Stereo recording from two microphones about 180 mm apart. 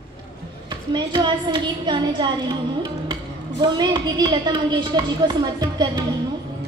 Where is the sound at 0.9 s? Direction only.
25° right (ahead or behind).